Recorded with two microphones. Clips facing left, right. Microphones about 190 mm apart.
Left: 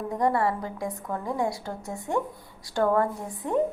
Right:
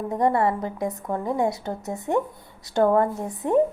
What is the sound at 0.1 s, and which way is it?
A woman's voice, 25° right (ahead or behind).